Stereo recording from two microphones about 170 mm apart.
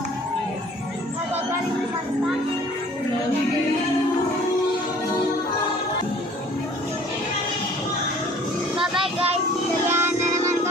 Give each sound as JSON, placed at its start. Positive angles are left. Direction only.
{"t": 8.9, "sound": "child singing", "side_deg": -30}
{"t": 9.8, "sound": "music", "side_deg": -15}